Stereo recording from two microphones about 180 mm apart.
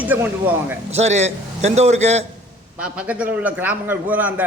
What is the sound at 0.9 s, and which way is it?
A man's voice, 40° right (ahead or behind).